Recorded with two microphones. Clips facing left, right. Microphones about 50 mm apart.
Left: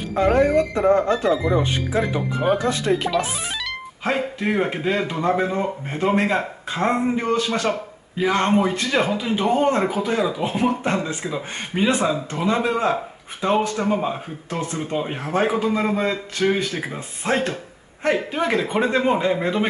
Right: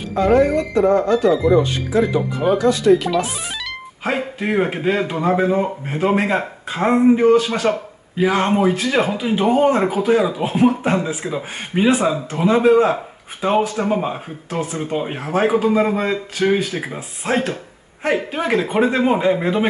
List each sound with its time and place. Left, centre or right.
0.1 s speech: left
4.0 s a man's voice: centre